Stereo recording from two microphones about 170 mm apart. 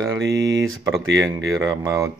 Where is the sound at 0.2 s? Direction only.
90° right.